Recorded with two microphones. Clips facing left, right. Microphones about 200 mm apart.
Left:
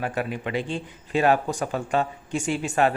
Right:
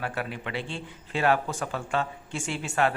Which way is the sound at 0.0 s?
15° left (ahead or behind).